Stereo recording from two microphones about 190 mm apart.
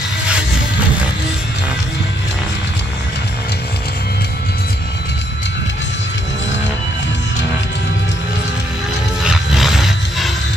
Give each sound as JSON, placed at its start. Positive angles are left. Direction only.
{"t": 9.2, "sound": "roar", "side_deg": 0}